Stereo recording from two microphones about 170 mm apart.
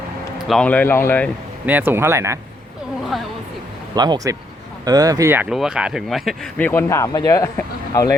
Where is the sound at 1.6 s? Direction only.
10° right (ahead or behind).